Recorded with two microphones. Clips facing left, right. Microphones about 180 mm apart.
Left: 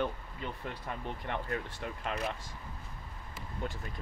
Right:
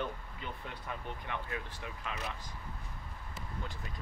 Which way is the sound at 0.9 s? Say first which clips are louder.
Left 3 dB; 45° left (ahead or behind).